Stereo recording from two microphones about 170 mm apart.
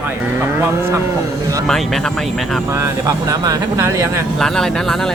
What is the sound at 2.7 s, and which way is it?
Speech, 15° right (ahead or behind).